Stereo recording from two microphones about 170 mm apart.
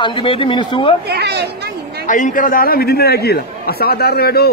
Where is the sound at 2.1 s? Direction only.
50° left (ahead or behind).